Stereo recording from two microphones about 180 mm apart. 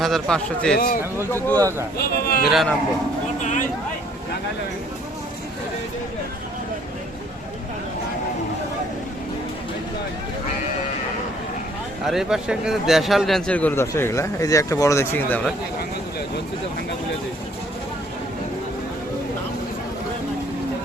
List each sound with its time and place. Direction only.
0.0 s a man's voice: 5° left (ahead or behind)
2.2 s a man's voice: 55° left (ahead or behind)
2.5 s speech: centre (ahead or behind)
3.4 s a sound: 45° left (ahead or behind)
12.0 s a man's voice: centre (ahead or behind)